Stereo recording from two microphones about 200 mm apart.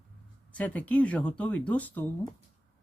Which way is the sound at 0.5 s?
5° left (ahead or behind).